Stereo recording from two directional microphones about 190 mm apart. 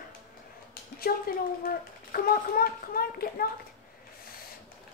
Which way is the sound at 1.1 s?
50° left (ahead or behind).